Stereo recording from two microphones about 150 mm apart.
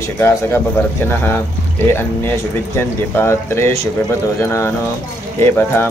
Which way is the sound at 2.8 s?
15° left (ahead or behind).